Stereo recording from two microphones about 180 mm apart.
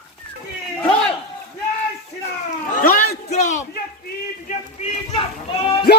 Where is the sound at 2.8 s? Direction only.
55° left (ahead or behind).